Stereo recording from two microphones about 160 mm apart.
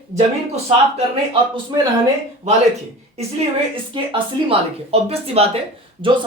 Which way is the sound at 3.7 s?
35° right (ahead or behind).